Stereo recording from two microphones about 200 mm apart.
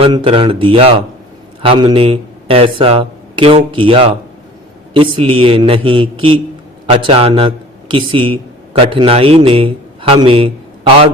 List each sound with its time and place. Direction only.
0.0 s a man's voice: 25° right (ahead or behind)